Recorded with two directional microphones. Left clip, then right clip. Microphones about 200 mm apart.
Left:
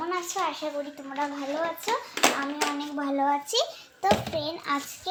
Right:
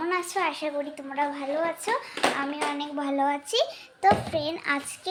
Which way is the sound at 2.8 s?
15° right (ahead or behind).